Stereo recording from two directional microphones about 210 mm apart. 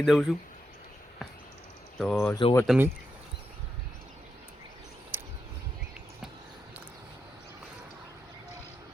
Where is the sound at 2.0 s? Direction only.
Centre (ahead or behind).